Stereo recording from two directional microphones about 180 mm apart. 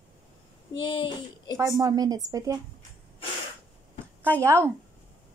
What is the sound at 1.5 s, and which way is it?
A woman's voice, 15° right (ahead or behind).